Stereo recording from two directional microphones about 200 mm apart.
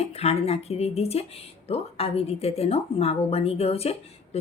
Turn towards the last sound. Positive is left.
turn(degrees=30)  # may be behind; listen again after turning